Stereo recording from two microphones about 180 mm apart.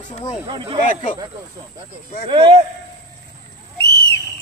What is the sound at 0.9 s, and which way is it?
Speech, 45° left (ahead or behind).